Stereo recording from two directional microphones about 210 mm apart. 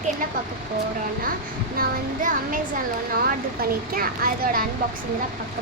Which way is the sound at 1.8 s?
40° right (ahead or behind).